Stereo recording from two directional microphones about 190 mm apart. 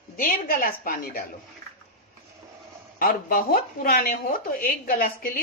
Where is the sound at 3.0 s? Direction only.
45° left (ahead or behind).